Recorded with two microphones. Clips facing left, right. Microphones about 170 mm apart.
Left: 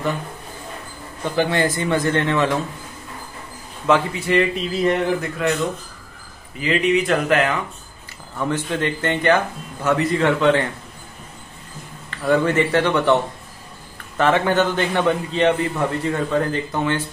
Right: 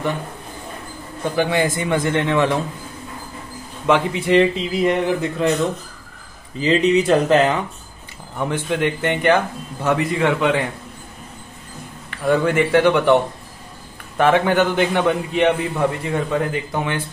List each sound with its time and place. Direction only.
1.3 s a man's voice: 15° right (ahead or behind)
3.8 s speech: 20° right (ahead or behind)
6.6 s speech: 30° right (ahead or behind)
8.4 s a man's voice: 15° right (ahead or behind)
12.1 s a man's voice: 10° right (ahead or behind)